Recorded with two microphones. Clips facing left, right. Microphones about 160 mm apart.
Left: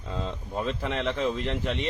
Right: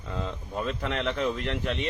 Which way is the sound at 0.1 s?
20° left (ahead or behind).